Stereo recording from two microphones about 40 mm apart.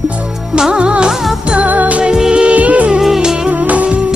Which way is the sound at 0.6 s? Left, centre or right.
Right.